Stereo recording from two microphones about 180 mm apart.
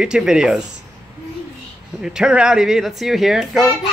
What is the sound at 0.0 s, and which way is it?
Speech, 5° right (ahead or behind).